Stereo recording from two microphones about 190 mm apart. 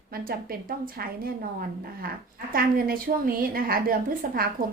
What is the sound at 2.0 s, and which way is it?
Speech, 50° right (ahead or behind).